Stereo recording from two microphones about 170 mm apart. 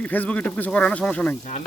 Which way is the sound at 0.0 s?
10° left (ahead or behind).